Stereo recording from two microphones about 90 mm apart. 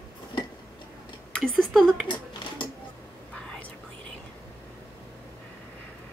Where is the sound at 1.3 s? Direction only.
5° left (ahead or behind).